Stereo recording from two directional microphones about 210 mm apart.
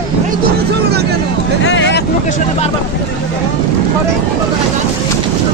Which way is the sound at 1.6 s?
60° left (ahead or behind).